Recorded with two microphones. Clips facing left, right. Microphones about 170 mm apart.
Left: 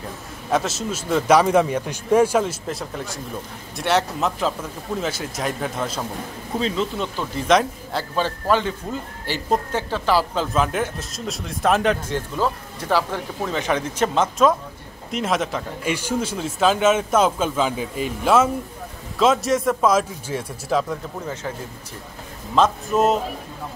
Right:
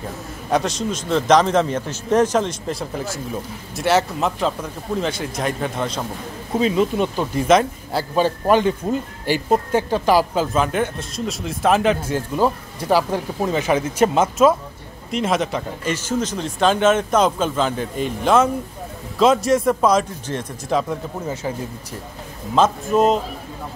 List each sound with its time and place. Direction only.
0.5 s a man's voice: centre (ahead or behind)
6.6 s speech: 15° right (ahead or behind)
7.4 s speech: 5° right (ahead or behind)
8.2 s speech: 15° right (ahead or behind)
12.4 s speech: 15° right (ahead or behind)
15.9 s speech: 10° left (ahead or behind)
20.9 s speech: 10° right (ahead or behind)
22.6 s speech: centre (ahead or behind)